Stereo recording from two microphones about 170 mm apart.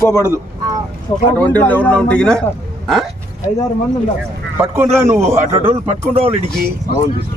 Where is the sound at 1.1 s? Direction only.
30° left (ahead or behind).